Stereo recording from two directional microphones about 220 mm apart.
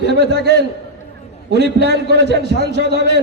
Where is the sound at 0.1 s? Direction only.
50° right (ahead or behind).